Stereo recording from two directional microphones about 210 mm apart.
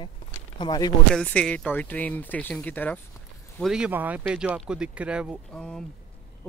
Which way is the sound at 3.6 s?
5° right (ahead or behind).